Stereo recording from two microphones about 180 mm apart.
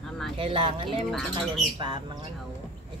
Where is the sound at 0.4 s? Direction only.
30° right (ahead or behind).